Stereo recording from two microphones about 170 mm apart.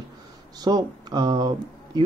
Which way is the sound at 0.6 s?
25° right (ahead or behind).